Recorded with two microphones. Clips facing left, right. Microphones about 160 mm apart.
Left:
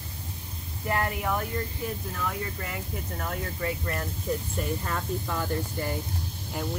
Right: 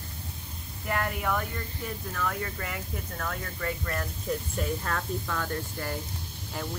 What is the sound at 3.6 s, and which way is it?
Speech, 20° left (ahead or behind).